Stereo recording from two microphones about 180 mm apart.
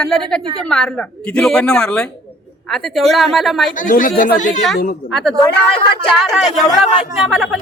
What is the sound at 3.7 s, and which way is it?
Speech, 50° left (ahead or behind).